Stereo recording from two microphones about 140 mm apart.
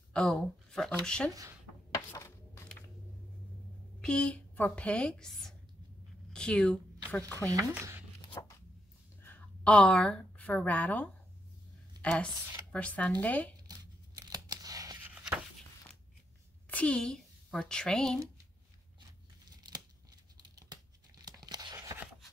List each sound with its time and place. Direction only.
0.1 s speech: 5° left (ahead or behind)
2.0 s a sound: 20° left (ahead or behind)
4.0 s a woman's voice: 5° left (ahead or behind)
7.2 s speech: 25° right (ahead or behind)
8.2 s zipper: 25° left (ahead or behind)
9.2 s a woman's voice: 10° left (ahead or behind)
13.7 s scissors: 30° right (ahead or behind)
15.0 s a sound: 10° right (ahead or behind)
16.6 s a woman's voice: 10° left (ahead or behind)
20.5 s crumpling: 30° right (ahead or behind)
21.5 s a sound: 30° right (ahead or behind)